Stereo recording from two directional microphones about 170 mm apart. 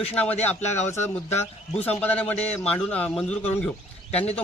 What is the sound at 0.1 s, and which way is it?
A man's voice, 10° left (ahead or behind).